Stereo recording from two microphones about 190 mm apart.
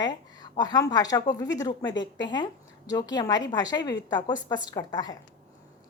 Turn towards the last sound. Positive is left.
turn(degrees=20)  # may be behind; listen again after turning